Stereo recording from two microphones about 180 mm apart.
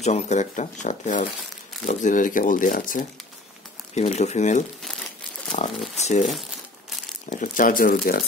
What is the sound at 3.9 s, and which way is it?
Speech, 35° left (ahead or behind).